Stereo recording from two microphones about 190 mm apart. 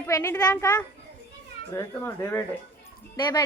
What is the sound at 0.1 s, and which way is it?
A child's voice, 15° left (ahead or behind).